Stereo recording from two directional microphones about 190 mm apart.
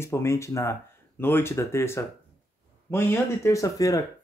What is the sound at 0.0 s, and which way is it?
Speech, 15° left (ahead or behind).